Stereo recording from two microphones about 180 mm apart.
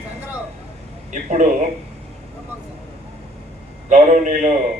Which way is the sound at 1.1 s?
45° right (ahead or behind).